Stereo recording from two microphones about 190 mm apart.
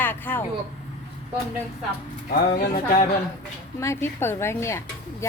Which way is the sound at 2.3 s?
50° left (ahead or behind).